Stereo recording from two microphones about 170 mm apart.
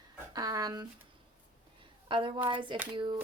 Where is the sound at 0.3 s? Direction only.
20° right (ahead or behind).